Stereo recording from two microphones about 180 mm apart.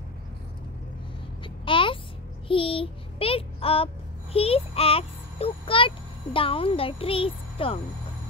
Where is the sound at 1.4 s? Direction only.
30° left (ahead or behind).